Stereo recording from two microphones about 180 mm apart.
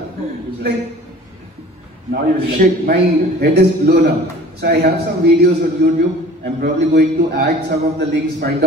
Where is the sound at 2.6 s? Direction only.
60° right (ahead or behind).